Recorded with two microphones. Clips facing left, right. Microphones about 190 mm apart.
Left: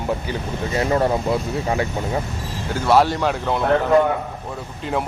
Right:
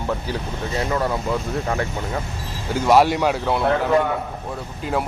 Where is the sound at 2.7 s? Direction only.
10° right (ahead or behind).